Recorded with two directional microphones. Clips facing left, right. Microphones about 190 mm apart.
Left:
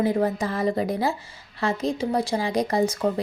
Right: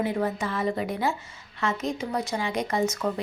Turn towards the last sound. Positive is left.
turn(degrees=35)  # may be behind; listen again after turning